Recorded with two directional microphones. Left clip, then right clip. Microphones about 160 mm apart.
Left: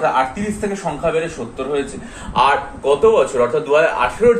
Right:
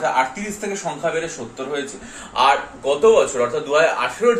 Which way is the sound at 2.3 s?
5° left (ahead or behind).